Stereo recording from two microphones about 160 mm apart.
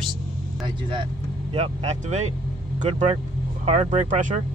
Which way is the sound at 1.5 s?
40° right (ahead or behind).